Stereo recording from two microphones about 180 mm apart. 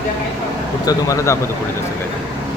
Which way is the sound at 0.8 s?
20° left (ahead or behind).